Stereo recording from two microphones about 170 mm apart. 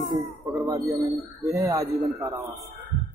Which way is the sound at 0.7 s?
20° right (ahead or behind).